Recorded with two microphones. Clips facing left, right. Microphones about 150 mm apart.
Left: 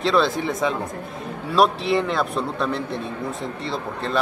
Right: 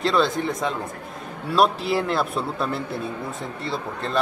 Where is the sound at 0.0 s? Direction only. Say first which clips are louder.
Left 1 dB; centre (ahead or behind).